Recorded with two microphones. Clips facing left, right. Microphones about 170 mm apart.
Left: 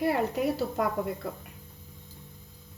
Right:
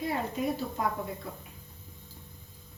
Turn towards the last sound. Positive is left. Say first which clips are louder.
# left 5 dB
turn(degrees=70)  # may be behind; listen again after turning